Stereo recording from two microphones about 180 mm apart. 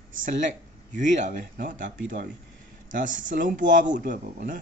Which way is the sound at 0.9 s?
40° right (ahead or behind).